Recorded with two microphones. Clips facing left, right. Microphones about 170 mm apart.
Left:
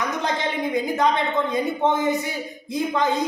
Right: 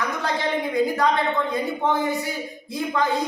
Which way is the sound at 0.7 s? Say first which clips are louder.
Even; 20° left (ahead or behind).